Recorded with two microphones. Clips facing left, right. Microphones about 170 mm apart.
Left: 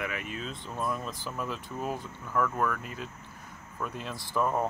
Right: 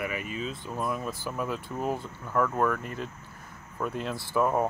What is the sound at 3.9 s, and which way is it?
Speech, 60° right (ahead or behind).